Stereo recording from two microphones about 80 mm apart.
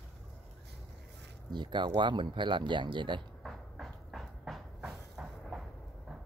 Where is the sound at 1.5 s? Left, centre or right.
Right.